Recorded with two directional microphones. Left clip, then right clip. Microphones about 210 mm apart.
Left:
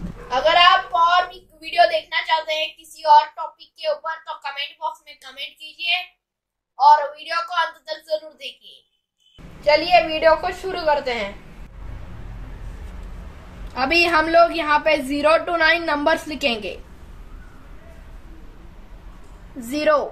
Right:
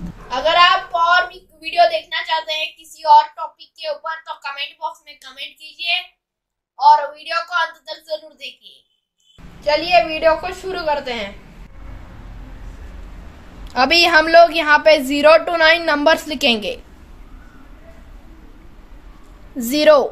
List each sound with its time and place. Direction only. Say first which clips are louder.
0.3 s a sound: right 1 dB; centre (ahead or behind)
6.8 s a woman's voice: right 2 dB; centre (ahead or behind)
13.7 s a woman's voice: right 5 dB; 50° right (ahead or behind)
19.7 s a woman's voice: right 7 dB; 50° right (ahead or behind)